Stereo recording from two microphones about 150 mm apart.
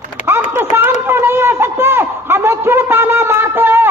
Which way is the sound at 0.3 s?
15° right (ahead or behind).